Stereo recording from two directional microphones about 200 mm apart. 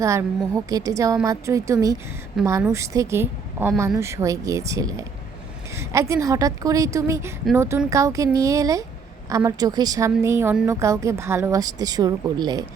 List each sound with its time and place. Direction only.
0.0 s a woman's voice: 15° right (ahead or behind)